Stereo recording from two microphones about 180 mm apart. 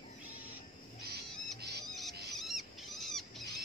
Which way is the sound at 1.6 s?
65° right (ahead or behind).